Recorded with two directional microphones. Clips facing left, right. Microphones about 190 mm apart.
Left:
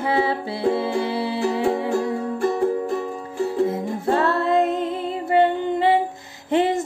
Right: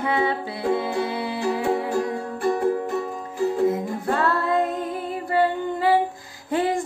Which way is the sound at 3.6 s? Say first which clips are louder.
Left 1 dB; 25° left (ahead or behind).